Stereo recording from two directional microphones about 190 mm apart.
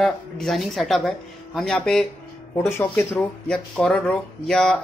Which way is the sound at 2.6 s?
15° left (ahead or behind).